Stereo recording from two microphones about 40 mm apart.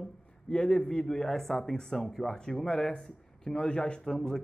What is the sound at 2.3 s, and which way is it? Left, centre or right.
Speech, centre.